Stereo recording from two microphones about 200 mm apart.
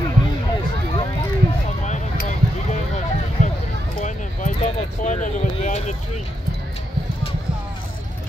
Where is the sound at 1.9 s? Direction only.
35° left (ahead or behind).